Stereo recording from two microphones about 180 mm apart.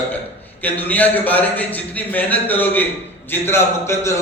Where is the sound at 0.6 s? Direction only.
10° left (ahead or behind).